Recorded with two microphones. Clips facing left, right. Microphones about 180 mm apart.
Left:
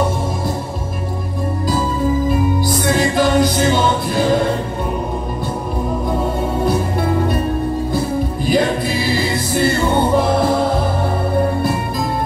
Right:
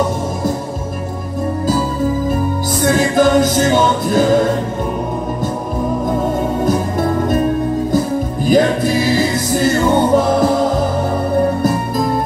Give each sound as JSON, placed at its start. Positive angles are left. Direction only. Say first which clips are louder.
{"t": 2.8, "sound": "music", "louder": "right 5 dB", "side_deg": -45}
{"t": 6.6, "sound": "music", "louder": "even", "side_deg": -45}
{"t": 8.5, "sound": "music", "louder": "right 5 dB", "side_deg": -45}